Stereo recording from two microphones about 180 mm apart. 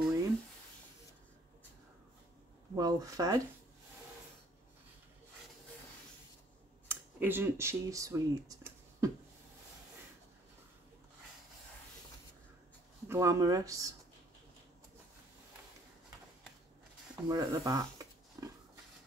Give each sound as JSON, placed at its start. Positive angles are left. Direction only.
{"t": 2.7, "sound": "speech", "side_deg": -20}
{"t": 6.9, "sound": "speech", "side_deg": -10}
{"t": 13.1, "sound": "speech", "side_deg": -15}
{"t": 17.3, "sound": "a sound", "side_deg": -20}